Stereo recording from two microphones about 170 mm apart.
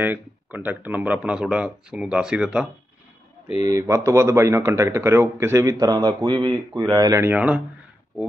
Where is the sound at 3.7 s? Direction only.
20° right (ahead or behind).